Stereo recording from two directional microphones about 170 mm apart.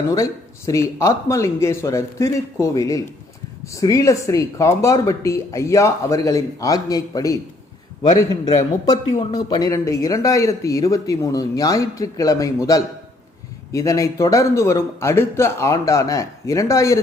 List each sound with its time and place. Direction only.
0.1 s a man's voice: 20° left (ahead or behind)
8.9 s a man's voice: 25° left (ahead or behind)